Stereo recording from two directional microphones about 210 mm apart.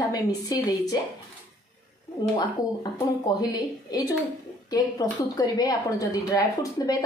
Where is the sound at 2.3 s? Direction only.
20° left (ahead or behind).